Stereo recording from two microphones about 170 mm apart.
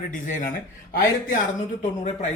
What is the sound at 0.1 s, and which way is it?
Speech, 50° left (ahead or behind).